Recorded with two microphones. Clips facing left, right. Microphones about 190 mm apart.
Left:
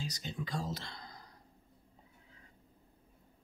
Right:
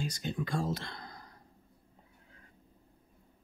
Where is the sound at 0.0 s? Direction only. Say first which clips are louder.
Right 5 dB; 55° right (ahead or behind).